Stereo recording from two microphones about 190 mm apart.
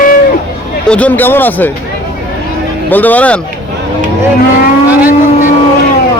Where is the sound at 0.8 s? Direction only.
5° left (ahead or behind).